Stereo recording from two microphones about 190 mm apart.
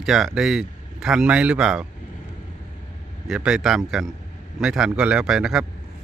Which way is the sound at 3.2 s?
5° right (ahead or behind).